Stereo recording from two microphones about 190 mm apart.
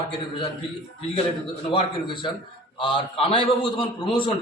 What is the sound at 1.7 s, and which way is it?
A man's voice, 25° left (ahead or behind).